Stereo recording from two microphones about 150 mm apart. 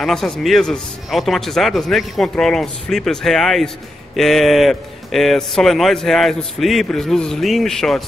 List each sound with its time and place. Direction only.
0.0 s a man's voice: centre (ahead or behind)